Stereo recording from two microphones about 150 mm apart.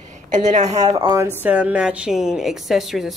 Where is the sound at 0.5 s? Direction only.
50° right (ahead or behind).